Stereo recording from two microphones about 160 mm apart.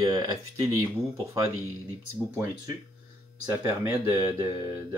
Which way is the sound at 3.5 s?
15° right (ahead or behind).